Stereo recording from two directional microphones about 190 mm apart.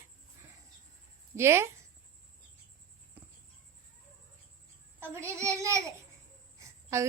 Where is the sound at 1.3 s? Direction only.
15° right (ahead or behind).